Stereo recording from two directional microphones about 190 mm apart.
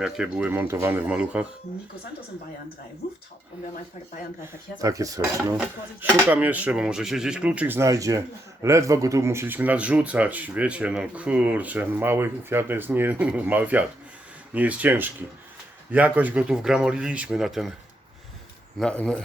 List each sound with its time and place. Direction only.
0.0 s speech: 5° right (ahead or behind)
4.8 s speech: 20° right (ahead or behind); by 17.7 s centre (ahead or behind)
18.8 s speech: 5° left (ahead or behind)